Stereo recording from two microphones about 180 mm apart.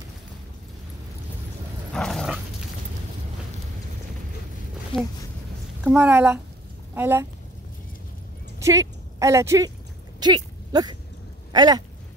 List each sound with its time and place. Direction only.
2.0 s dog: centre (ahead or behind)
5.9 s a woman's voice: 10° right (ahead or behind)
8.5 s speech: 15° right (ahead or behind)
11.5 s a sound: 20° right (ahead or behind)